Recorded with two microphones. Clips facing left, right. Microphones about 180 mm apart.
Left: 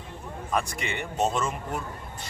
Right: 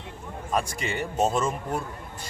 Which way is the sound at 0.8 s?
40° right (ahead or behind).